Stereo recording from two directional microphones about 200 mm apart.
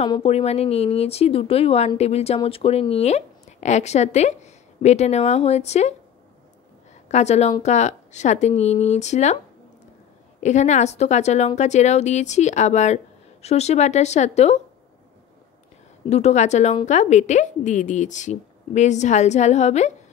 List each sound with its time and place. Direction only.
0.0 s a woman's voice: 30° left (ahead or behind)
7.1 s a woman's voice: 35° left (ahead or behind)
10.4 s a woman's voice: 35° left (ahead or behind)
16.1 s a woman's voice: 35° left (ahead or behind)